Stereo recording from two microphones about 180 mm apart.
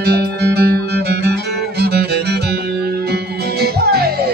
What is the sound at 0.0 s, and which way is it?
Music, 65° right (ahead or behind).